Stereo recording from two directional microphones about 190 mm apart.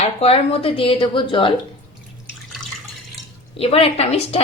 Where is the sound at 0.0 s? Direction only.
30° left (ahead or behind).